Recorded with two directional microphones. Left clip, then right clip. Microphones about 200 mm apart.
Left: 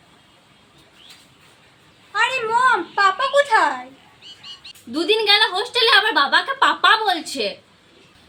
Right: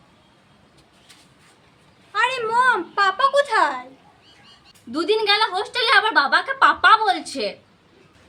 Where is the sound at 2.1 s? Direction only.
25° right (ahead or behind).